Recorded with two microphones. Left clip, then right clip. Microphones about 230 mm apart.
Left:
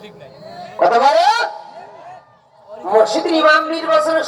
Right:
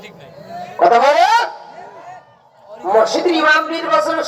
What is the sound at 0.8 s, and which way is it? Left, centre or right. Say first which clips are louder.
Speech: right 1 dB; right.